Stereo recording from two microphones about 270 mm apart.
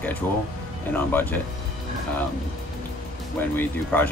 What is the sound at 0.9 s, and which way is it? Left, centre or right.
Speech, centre.